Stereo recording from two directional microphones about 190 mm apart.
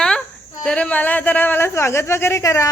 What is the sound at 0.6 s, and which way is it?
Speech, 5° left (ahead or behind).